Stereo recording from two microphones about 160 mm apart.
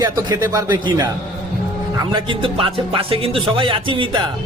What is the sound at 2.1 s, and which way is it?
Speech, 30° right (ahead or behind).